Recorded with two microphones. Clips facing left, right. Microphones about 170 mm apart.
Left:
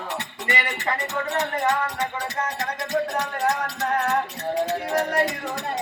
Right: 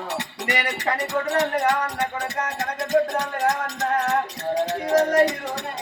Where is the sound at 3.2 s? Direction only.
45° right (ahead or behind).